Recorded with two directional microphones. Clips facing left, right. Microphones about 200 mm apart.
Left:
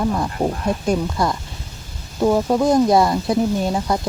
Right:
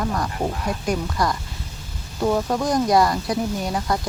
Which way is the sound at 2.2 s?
10° left (ahead or behind).